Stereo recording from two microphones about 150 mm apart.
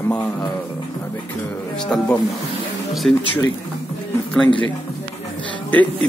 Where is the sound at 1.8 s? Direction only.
5° left (ahead or behind).